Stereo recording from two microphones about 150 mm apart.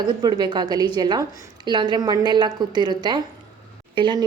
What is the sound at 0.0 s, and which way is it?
A woman's voice, 30° right (ahead or behind).